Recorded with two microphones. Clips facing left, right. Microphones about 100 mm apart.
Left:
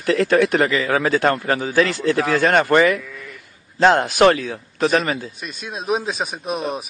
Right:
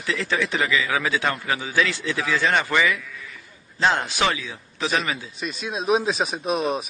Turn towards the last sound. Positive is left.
turn(degrees=0)  # may be behind; listen again after turning